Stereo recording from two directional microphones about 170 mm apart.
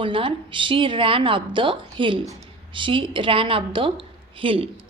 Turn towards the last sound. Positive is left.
turn(degrees=-30)  # may be behind; listen again after turning